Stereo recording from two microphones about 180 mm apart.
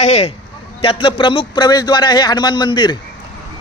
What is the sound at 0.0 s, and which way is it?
A man's voice, 40° left (ahead or behind).